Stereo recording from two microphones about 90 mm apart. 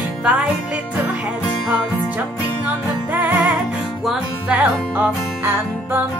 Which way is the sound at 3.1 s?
20° right (ahead or behind).